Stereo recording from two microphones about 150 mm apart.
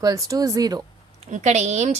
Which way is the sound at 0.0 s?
25° right (ahead or behind).